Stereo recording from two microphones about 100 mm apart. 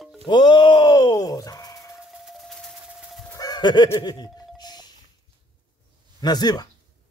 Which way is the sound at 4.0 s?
40° left (ahead or behind).